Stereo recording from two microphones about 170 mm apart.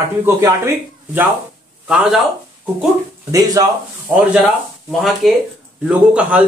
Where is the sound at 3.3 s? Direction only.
20° right (ahead or behind).